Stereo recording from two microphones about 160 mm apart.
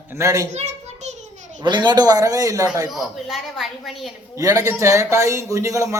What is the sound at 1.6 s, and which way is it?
A man's voice, 30° right (ahead or behind).